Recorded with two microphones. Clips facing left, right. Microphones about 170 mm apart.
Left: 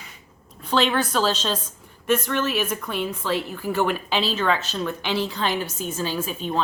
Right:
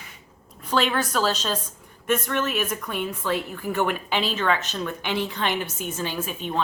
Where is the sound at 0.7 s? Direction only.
30° left (ahead or behind).